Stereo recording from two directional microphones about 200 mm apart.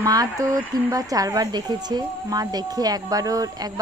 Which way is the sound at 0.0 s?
20° right (ahead or behind).